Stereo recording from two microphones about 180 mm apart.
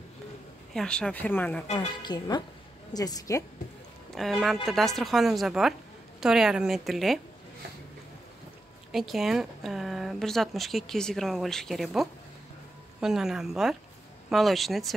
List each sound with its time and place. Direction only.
0.7 s speech: 5° left (ahead or behind)
2.0 s a woman's voice: 25° left (ahead or behind)
4.1 s speech: centre (ahead or behind)
8.9 s speech: centre (ahead or behind)